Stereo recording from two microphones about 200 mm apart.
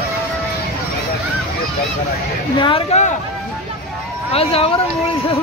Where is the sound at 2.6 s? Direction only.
25° left (ahead or behind).